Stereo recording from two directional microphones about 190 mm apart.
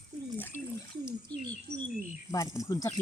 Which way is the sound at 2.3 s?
15° left (ahead or behind).